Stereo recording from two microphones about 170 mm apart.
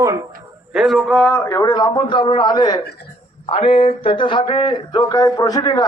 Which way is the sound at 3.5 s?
35° left (ahead or behind).